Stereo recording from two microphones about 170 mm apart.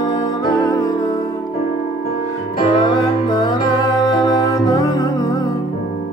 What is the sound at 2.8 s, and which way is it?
Music, 25° left (ahead or behind).